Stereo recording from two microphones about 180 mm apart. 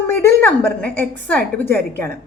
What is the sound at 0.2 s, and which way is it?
A woman's voice, 10° left (ahead or behind).